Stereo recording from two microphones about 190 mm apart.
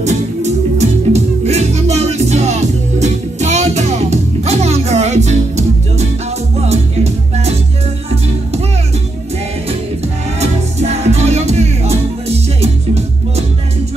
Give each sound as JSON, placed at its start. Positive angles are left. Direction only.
{"t": 0.0, "sound": "music", "side_deg": -35}
{"t": 10.4, "sound": "music", "side_deg": -35}